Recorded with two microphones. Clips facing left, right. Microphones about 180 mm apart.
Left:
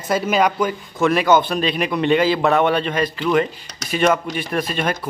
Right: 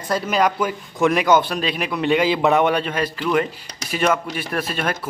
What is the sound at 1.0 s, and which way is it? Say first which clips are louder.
A man's voice: left 1 dB; 15° right (ahead or behind).